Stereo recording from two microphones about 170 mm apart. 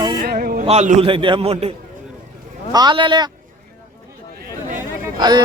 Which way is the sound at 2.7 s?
25° right (ahead or behind).